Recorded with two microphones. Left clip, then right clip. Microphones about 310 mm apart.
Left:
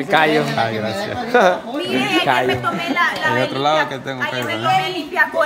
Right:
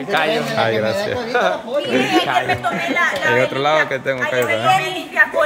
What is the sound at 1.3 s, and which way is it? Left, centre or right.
Speech, left.